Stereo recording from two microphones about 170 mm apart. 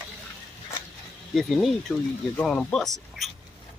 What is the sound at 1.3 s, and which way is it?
Speech, centre (ahead or behind).